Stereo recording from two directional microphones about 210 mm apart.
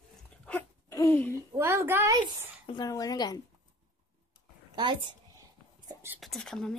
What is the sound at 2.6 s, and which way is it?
Speech, 20° left (ahead or behind).